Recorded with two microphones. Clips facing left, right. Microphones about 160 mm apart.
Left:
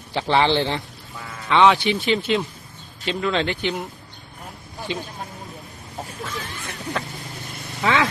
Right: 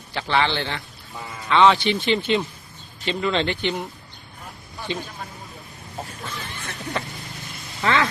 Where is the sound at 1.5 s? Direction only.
10° left (ahead or behind).